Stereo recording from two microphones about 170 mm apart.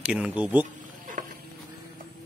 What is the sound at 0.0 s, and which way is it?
Speech, 5° right (ahead or behind).